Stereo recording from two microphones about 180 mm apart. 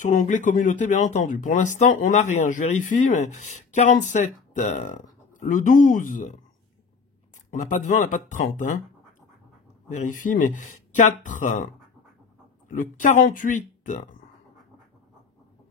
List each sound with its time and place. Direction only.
0.0 s speech: 45° left (ahead or behind)
7.7 s speech: 45° left (ahead or behind)
9.9 s speech: 45° left (ahead or behind)